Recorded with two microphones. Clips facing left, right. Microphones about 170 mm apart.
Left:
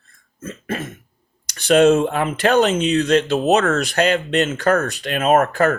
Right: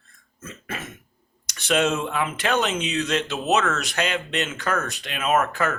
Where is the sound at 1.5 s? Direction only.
40° left (ahead or behind).